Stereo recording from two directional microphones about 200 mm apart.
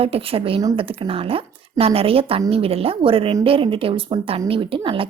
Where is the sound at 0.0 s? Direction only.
30° right (ahead or behind).